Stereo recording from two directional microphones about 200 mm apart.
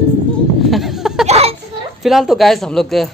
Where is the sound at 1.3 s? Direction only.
30° right (ahead or behind).